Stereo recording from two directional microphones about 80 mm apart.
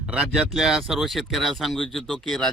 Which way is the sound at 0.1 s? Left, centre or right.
Centre.